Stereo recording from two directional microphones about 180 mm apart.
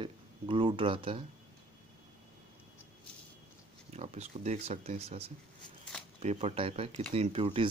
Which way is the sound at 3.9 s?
40° right (ahead or behind).